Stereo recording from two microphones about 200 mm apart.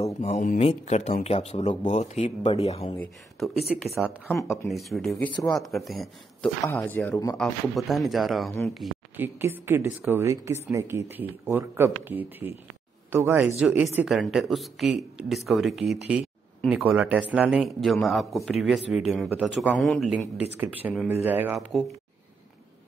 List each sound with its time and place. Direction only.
0.0 s speech: 35° left (ahead or behind)
3.0 s speech: centre (ahead or behind)
6.6 s speech: 10° left (ahead or behind)
7.3 s speech: centre (ahead or behind)